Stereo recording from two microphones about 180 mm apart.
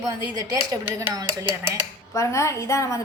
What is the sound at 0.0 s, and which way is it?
Speech, 20° right (ahead or behind).